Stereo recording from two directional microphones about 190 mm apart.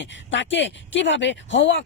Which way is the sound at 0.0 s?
75° left (ahead or behind).